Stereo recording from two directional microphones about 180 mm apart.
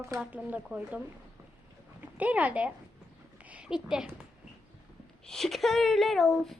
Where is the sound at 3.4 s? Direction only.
5° right (ahead or behind).